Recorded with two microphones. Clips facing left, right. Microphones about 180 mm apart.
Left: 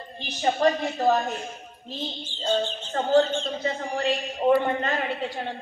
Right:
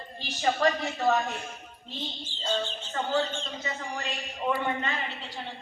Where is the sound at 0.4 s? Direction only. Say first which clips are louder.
Left 3 dB; 30° left (ahead or behind).